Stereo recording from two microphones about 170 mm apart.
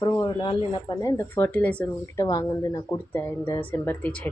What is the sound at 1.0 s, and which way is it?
Speech, 20° left (ahead or behind).